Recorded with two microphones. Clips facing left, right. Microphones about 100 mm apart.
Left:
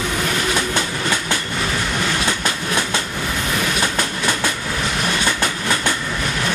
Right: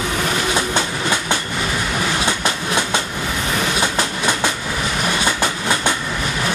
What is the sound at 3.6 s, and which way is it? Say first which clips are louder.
Train: right 2 dB; 20° right (ahead or behind).